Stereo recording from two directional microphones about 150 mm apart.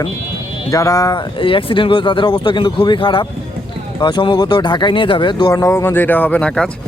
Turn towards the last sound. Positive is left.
turn(degrees=5)  # may be behind; listen again after turning